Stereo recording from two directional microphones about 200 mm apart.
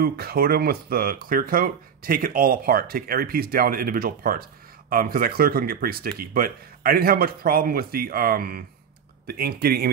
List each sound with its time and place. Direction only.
0.0 s speech: 50° right (ahead or behind)